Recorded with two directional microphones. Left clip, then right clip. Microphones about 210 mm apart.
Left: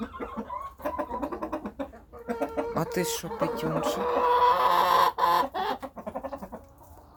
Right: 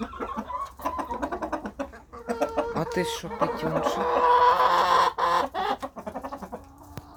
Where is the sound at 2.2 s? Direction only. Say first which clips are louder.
Right 4 dB; 25° right (ahead or behind).